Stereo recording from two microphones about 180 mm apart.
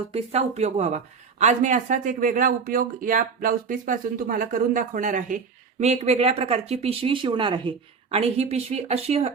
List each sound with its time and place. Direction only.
0.1 s speech: 35° right (ahead or behind)